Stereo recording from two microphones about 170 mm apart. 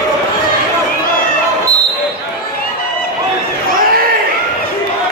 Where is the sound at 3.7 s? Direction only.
55° right (ahead or behind).